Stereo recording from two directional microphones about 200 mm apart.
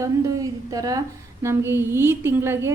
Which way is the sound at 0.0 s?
15° right (ahead or behind).